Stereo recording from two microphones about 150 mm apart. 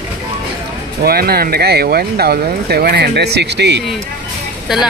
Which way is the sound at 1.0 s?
90° right.